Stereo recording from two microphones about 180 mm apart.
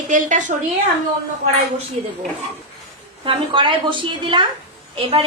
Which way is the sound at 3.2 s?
30° right (ahead or behind).